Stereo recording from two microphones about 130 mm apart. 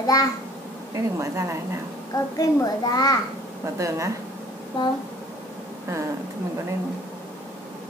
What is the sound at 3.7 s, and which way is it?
Speech, 25° right (ahead or behind).